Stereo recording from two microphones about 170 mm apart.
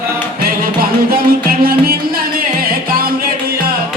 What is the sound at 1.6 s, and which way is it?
Music, 60° right (ahead or behind).